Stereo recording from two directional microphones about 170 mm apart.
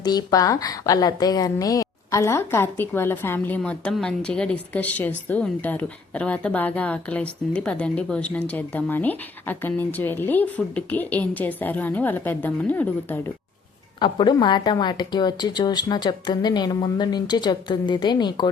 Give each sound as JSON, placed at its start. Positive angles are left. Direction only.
{"t": 0.0, "sound": "a woman's voice", "side_deg": 25}
{"t": 14.0, "sound": "a woman's voice", "side_deg": 25}